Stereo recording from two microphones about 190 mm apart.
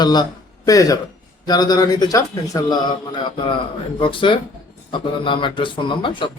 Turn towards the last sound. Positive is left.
turn(degrees=25)  # may be behind; listen again after turning